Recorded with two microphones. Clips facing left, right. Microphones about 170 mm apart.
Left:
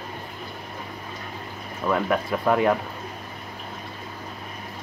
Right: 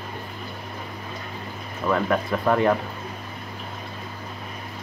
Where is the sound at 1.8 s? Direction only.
5° left (ahead or behind).